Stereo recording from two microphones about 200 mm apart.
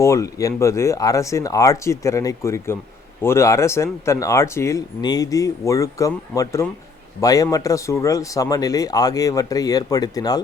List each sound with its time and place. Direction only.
0.0 s speech: 15° left (ahead or behind)